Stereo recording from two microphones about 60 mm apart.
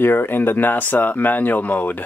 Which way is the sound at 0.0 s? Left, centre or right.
Left.